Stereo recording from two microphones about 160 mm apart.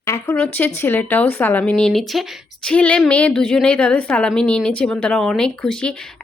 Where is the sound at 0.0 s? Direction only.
20° left (ahead or behind).